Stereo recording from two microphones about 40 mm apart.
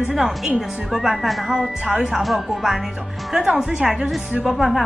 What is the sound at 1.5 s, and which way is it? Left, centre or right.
Speech, centre.